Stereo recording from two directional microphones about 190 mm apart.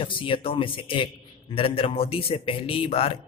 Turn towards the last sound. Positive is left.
turn(degrees=30)  # may be behind; listen again after turning